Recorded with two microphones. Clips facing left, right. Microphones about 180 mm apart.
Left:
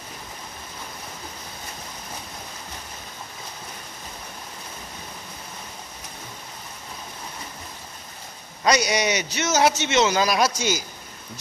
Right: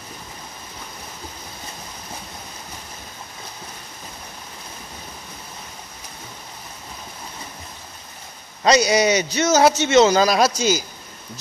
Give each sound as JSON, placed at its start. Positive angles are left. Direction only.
{"t": 8.6, "sound": "a man's voice", "side_deg": -25}